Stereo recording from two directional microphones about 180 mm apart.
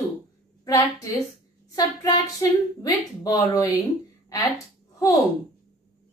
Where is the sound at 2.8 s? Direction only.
20° left (ahead or behind).